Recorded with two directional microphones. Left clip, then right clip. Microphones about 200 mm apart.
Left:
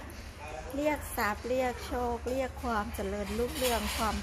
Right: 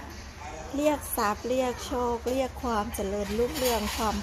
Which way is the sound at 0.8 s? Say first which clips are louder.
Right 5 dB; 25° right (ahead or behind).